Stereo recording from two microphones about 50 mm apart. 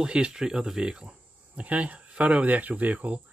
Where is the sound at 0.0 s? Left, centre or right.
Centre.